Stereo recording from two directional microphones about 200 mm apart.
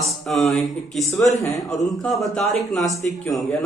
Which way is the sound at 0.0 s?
Centre (ahead or behind).